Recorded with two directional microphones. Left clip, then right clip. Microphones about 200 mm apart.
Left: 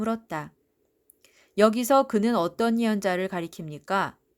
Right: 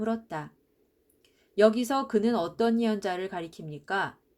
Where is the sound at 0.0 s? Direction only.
45° left (ahead or behind).